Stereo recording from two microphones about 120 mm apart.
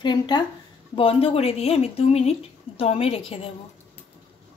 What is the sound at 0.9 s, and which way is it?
Speech, 50° left (ahead or behind).